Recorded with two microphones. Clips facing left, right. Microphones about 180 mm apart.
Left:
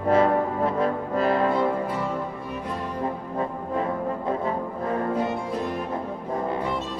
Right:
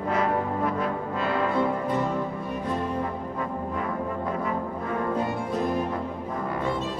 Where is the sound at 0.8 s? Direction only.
40° left (ahead or behind).